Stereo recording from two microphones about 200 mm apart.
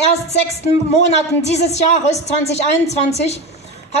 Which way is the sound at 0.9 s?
35° left (ahead or behind).